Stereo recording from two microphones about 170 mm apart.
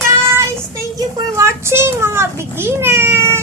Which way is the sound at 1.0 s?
15° right (ahead or behind).